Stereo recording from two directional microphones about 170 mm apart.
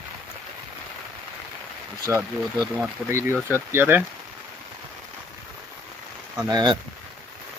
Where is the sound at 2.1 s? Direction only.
15° right (ahead or behind).